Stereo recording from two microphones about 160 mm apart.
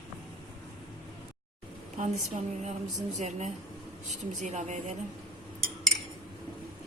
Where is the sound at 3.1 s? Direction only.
45° right (ahead or behind).